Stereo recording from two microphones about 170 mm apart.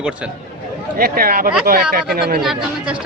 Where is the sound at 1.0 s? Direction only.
60° right (ahead or behind).